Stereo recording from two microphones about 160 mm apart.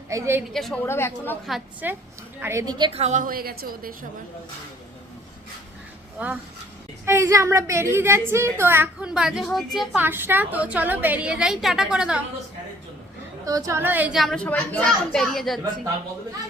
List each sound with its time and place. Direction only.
0.1 s a woman's voice: 15° right (ahead or behind)
0.5 s a woman's voice: 5° left (ahead or behind)
0.9 s speech: 15° left (ahead or behind)
1.8 s a woman's voice: 10° right (ahead or behind)
2.9 s a woman's voice: 45° right (ahead or behind); by 3.9 s 65° right (ahead or behind)
6.1 s a woman's voice: 10° right (ahead or behind)
10.0 s a woman's voice: 15° right (ahead or behind)
13.4 s a woman's voice: 20° right (ahead or behind); by 15.6 s centre (ahead or behind)